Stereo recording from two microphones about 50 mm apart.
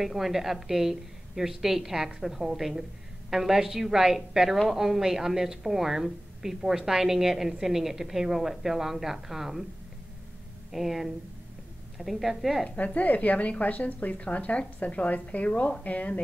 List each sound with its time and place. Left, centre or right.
0.0 s a woman's voice: centre
10.7 s a woman's voice: centre
12.6 s a woman's voice: left